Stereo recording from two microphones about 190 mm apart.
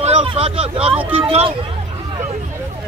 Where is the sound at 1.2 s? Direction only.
30° right (ahead or behind).